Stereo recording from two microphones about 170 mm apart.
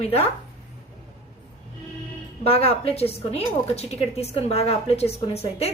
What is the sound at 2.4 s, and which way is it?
Speech, 35° left (ahead or behind).